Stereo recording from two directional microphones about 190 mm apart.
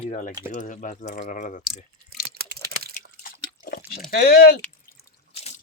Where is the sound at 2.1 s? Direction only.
55° right (ahead or behind).